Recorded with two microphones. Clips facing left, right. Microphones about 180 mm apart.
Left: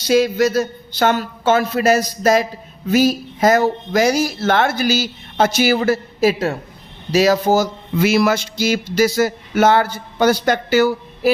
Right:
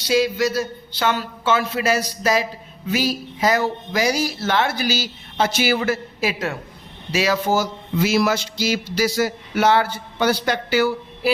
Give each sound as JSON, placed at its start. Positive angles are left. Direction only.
{"t": 0.0, "sound": "speech", "side_deg": 45}
{"t": 7.9, "sound": "speech", "side_deg": 60}